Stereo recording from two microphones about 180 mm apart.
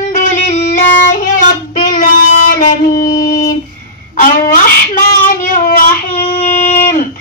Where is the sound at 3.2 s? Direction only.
20° left (ahead or behind).